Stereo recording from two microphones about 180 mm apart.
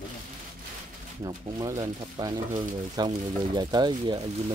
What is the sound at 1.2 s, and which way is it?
Stir, 20° right (ahead or behind).